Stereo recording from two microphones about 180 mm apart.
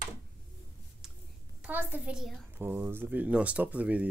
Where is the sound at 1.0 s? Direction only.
5° right (ahead or behind).